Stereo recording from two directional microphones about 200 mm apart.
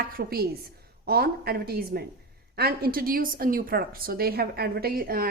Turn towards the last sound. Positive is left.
turn(degrees=-50)  # may be behind; listen again after turning